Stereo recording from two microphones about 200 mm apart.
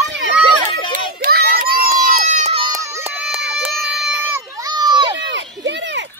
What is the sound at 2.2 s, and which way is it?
Baby cry, 35° right (ahead or behind).